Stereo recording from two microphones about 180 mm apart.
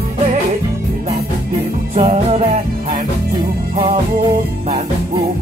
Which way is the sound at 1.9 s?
35° right (ahead or behind).